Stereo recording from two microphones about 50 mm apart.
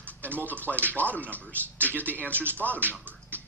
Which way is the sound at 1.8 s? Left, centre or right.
Right.